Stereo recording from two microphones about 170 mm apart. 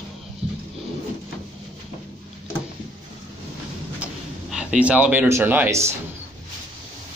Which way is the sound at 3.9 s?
5° right (ahead or behind).